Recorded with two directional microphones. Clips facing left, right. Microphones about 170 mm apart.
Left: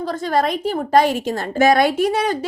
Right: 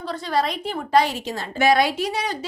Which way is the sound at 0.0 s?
45° left (ahead or behind).